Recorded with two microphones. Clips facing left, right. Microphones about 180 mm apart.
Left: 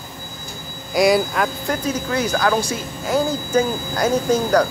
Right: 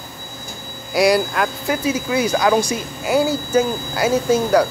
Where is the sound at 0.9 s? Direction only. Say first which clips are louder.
Even; centre (ahead or behind).